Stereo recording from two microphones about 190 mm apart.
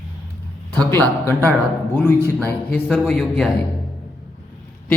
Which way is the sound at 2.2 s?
15° right (ahead or behind).